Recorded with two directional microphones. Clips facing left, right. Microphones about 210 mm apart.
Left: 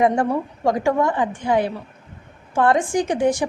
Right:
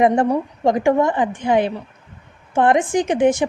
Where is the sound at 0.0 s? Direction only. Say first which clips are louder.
Right 3 dB; 20° right (ahead or behind).